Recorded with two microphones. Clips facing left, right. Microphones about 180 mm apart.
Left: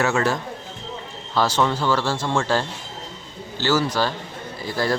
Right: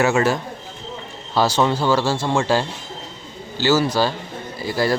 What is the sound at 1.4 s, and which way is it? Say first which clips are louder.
A man's voice: right 3 dB; 10° right (ahead or behind).